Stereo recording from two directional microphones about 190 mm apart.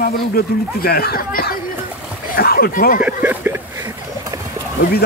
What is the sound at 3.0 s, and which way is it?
Speech, 10° right (ahead or behind).